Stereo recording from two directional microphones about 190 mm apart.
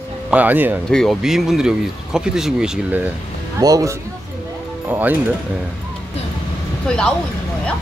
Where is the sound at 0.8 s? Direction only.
Centre (ahead or behind).